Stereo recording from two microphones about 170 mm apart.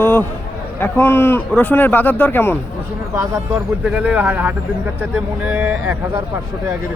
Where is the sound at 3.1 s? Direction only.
15° right (ahead or behind).